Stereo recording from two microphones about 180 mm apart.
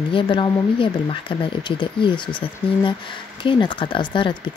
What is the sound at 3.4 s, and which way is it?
Speech, 25° left (ahead or behind).